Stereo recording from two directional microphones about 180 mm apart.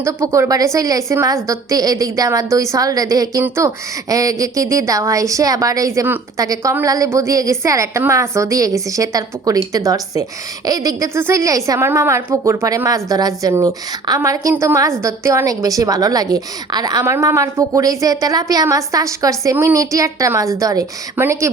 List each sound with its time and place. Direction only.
0.0 s a woman's voice: 15° right (ahead or behind)